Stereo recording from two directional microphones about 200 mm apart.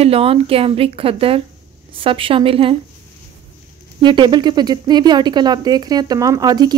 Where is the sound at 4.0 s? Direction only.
25° right (ahead or behind).